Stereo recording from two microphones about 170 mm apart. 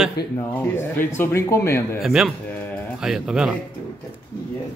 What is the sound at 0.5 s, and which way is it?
Speech, 10° left (ahead or behind).